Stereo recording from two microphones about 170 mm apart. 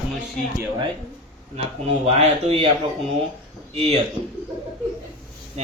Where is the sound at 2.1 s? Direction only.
40° right (ahead or behind).